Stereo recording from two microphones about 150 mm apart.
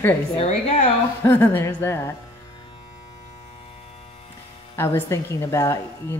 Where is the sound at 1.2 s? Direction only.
15° left (ahead or behind).